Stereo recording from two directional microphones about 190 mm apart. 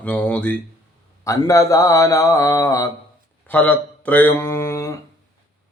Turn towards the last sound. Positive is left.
turn(degrees=15)  # may be behind; listen again after turning